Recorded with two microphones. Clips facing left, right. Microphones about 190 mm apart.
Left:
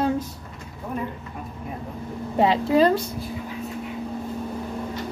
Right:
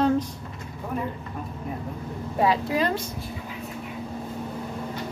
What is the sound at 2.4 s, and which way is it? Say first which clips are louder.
Speech: left 5 dB; 30° left (ahead or behind).